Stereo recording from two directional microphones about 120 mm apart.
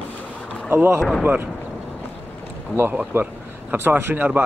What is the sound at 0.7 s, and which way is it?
Speech, 20° right (ahead or behind).